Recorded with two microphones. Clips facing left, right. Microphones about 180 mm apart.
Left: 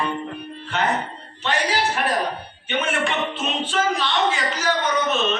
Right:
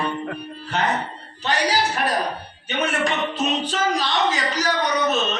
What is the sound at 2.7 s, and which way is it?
Speech, 40° right (ahead or behind).